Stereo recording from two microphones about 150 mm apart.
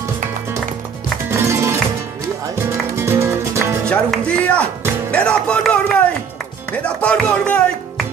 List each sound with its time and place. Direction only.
1.3 s music: 20° right (ahead or behind)
3.9 s music: 10° left (ahead or behind)
5.1 s speech: 5° left (ahead or behind)
6.8 s music: 10° left (ahead or behind)